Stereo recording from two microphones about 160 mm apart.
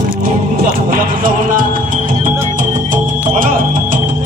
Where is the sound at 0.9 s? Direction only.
60° right (ahead or behind).